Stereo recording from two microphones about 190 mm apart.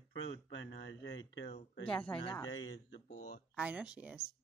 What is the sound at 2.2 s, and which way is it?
Speech, 20° left (ahead or behind).